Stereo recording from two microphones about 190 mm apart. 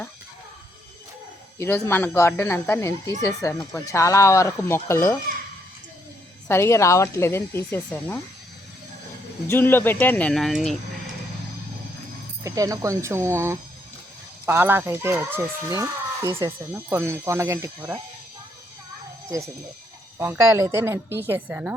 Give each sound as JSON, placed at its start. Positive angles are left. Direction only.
{"t": 1.5, "sound": "speech", "side_deg": 15}
{"t": 3.5, "sound": "speech", "side_deg": 0}
{"t": 3.8, "sound": "speech", "side_deg": 15}
{"t": 6.5, "sound": "speech", "side_deg": 15}
{"t": 9.5, "sound": "speech", "side_deg": 10}
{"t": 12.4, "sound": "speech", "side_deg": -15}
{"t": 19.3, "sound": "speech", "side_deg": -15}